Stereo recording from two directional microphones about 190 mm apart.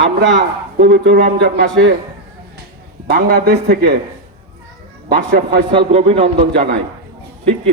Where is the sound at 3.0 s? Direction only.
55° right (ahead or behind).